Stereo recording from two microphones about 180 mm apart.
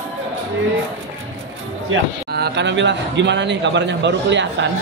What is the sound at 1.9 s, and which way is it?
A man's voice, 75° right (ahead or behind).